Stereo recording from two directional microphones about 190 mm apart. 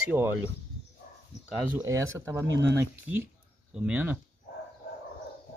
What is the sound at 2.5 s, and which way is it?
Speech, 65° right (ahead or behind).